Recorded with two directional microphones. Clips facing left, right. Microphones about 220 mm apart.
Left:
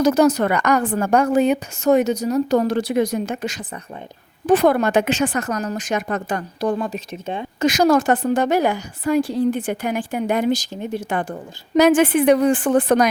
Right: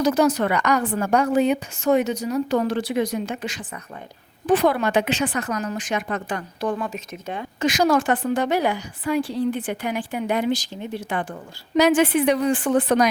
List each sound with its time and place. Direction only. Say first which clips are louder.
0.0 s a woman's voice: left 3 dB; 45° left (ahead or behind)
7.6 s a woman's voice: left 4 dB; 40° left (ahead or behind)